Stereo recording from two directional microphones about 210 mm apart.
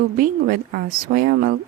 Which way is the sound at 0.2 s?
40° right (ahead or behind).